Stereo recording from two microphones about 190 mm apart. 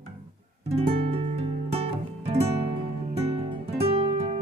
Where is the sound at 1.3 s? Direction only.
30° right (ahead or behind).